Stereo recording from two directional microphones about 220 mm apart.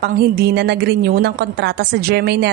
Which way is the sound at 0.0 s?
45° right (ahead or behind).